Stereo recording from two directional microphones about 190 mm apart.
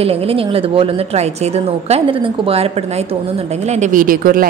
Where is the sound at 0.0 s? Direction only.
30° right (ahead or behind).